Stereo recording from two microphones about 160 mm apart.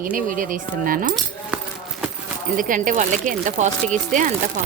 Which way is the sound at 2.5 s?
55° right (ahead or behind).